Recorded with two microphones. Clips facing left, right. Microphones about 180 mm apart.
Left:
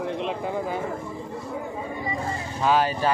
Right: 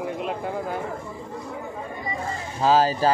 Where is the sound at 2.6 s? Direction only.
35° right (ahead or behind).